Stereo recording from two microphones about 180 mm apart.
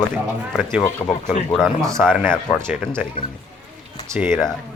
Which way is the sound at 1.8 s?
15° right (ahead or behind).